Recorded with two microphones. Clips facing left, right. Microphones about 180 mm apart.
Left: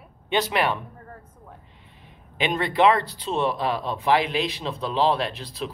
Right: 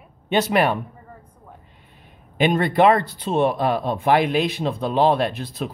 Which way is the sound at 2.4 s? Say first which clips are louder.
Right 4 dB; 50° right (ahead or behind).